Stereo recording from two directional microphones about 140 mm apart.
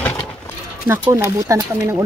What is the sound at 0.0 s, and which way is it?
Horse, 10° left (ahead or behind).